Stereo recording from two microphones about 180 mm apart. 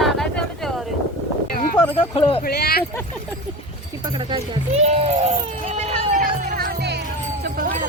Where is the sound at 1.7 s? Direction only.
30° left (ahead or behind).